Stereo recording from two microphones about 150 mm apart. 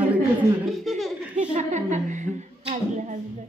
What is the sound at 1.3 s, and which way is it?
A woman's voice, 55° right (ahead or behind).